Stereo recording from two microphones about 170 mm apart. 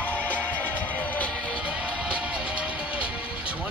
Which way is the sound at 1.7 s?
5° right (ahead or behind).